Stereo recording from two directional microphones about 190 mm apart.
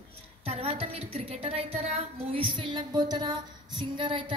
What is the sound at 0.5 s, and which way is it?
A woman's voice, 30° right (ahead or behind).